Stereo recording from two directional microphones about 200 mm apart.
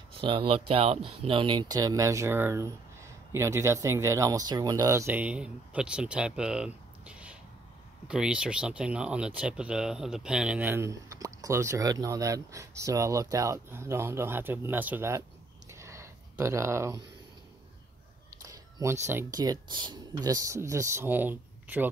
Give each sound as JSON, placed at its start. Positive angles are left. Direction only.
{"t": 0.2, "sound": "speech", "side_deg": -25}
{"t": 15.7, "sound": "a sound", "side_deg": -15}
{"t": 18.4, "sound": "speech", "side_deg": -15}